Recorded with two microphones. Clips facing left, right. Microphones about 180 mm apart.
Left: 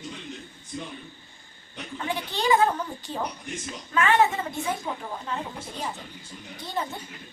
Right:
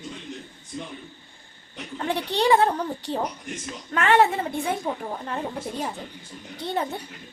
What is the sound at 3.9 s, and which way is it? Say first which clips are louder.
Speech: right 2 dB; 65° right (ahead or behind).